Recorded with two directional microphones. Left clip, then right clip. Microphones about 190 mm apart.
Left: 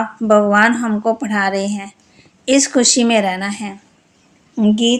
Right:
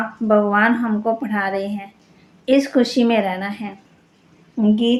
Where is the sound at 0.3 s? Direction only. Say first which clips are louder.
Left 4 dB; 55° left (ahead or behind).